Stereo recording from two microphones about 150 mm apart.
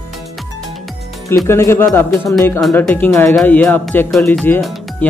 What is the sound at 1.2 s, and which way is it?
Speech, 20° left (ahead or behind).